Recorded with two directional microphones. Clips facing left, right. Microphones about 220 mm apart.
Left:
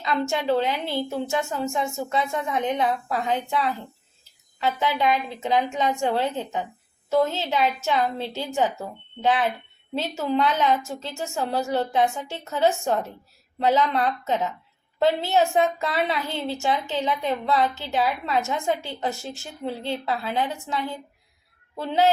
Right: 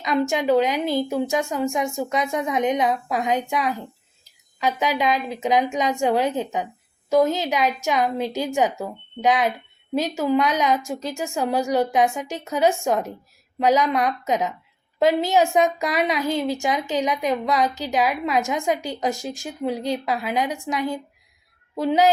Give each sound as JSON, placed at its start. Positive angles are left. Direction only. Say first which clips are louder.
{"t": 0.0, "sound": "a woman's voice", "louder": "right 3 dB", "side_deg": -15}